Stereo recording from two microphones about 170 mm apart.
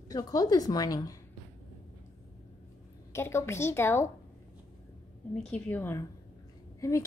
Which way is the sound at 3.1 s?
15° left (ahead or behind).